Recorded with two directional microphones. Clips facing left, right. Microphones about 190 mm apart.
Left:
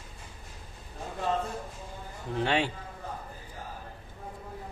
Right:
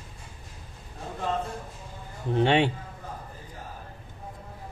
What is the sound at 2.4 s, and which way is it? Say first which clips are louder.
Speech: right 5 dB; 25° right (ahead or behind).